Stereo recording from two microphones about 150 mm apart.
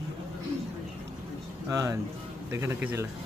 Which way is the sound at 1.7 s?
20° right (ahead or behind).